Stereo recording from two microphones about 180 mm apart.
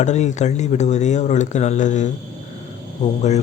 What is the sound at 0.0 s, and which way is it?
Speech, 40° left (ahead or behind).